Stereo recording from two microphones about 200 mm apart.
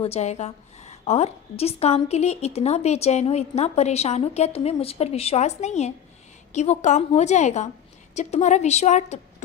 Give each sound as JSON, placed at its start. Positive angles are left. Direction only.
{"t": 0.0, "sound": "a woman's voice", "side_deg": 30}